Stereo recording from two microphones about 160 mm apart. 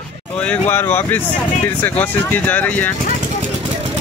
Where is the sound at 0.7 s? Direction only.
15° left (ahead or behind).